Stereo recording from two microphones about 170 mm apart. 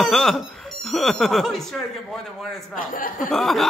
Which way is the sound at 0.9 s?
Centre (ahead or behind).